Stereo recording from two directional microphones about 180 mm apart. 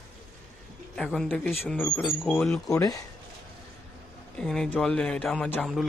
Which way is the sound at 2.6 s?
20° left (ahead or behind).